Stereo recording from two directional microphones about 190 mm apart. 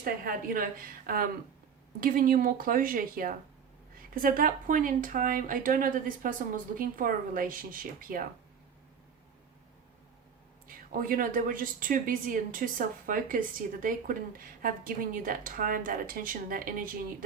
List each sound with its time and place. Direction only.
0.0 s a woman's voice: 50° right (ahead or behind)
10.7 s a woman's voice: 50° right (ahead or behind)